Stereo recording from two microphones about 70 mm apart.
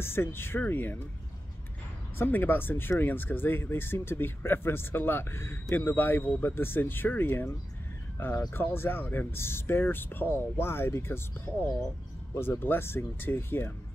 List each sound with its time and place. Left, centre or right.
0.0 s speech: left
2.1 s speech: left
8.5 s speech: left